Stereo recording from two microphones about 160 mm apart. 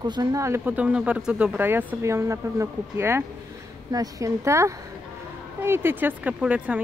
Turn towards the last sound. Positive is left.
turn(degrees=-5)  # may be behind; listen again after turning